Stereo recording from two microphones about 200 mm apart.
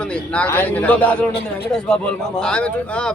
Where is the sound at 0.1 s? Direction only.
5° left (ahead or behind).